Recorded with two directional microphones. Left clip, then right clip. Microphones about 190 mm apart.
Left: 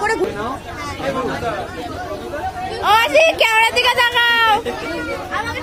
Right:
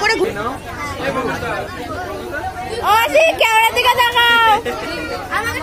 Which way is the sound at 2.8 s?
Centre (ahead or behind).